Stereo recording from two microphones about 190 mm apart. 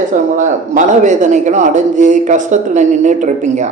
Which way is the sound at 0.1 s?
40° right (ahead or behind).